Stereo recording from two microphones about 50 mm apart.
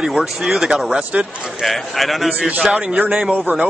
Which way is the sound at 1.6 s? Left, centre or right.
Centre.